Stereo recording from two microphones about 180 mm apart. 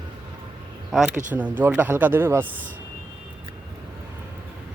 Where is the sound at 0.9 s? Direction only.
Centre (ahead or behind).